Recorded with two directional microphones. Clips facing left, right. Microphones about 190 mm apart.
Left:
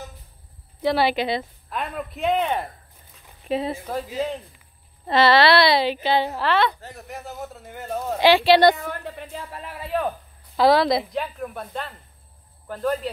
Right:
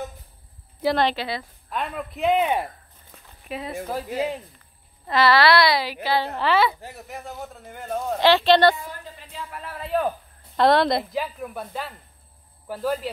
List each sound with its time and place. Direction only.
0.8 s a woman's voice: 10° left (ahead or behind)
3.4 s speech: 30° left (ahead or behind)
5.0 s speech: 25° left (ahead or behind)
6.3 s a woman's voice: centre (ahead or behind)
8.2 s speech: 10° left (ahead or behind)
8.7 s a woman's voice: 65° left (ahead or behind)
9.8 s a woman's voice: centre (ahead or behind)